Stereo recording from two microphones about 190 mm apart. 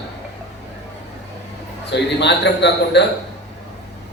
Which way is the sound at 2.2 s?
65° left (ahead or behind).